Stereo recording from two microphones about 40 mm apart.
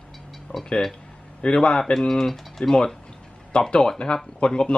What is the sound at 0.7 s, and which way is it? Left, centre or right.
Speech, centre.